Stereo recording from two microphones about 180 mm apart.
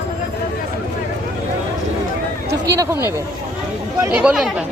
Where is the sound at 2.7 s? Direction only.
15° right (ahead or behind).